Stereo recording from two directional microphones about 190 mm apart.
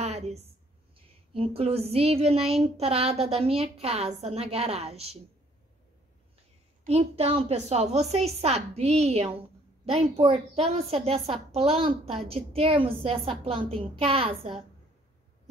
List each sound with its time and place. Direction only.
0.0 s a sound: 35° right (ahead or behind)
1.3 s a woman's voice: 30° right (ahead or behind)
6.8 s a woman's voice: 35° right (ahead or behind)